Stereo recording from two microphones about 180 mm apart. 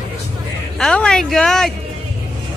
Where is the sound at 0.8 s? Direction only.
5° left (ahead or behind).